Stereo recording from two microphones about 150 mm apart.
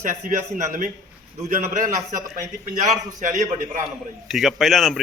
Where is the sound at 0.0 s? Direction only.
60° right (ahead or behind).